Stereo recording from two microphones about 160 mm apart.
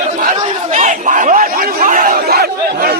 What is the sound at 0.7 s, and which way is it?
Chatter, 50° right (ahead or behind).